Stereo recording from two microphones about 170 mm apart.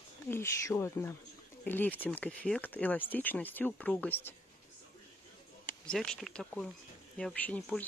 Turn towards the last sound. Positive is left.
turn(degrees=10)  # may be behind; listen again after turning